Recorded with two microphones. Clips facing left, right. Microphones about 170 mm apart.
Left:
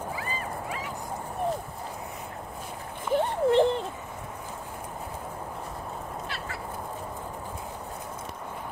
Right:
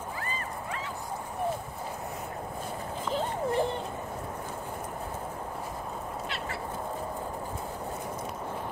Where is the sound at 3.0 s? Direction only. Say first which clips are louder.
Left 7 dB; 65° left (ahead or behind).